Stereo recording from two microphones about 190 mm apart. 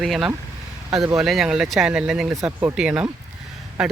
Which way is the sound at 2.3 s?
15° right (ahead or behind).